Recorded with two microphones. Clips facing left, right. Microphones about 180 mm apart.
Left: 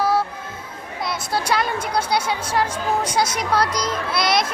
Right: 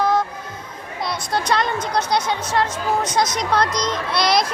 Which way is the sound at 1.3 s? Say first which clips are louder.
Right 1 dB; 5° left (ahead or behind).